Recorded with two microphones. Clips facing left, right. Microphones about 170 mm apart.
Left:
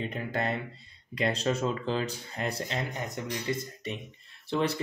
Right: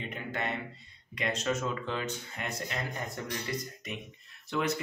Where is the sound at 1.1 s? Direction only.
35° left (ahead or behind).